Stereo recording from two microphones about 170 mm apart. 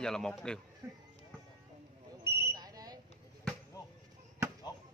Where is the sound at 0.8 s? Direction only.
15° right (ahead or behind).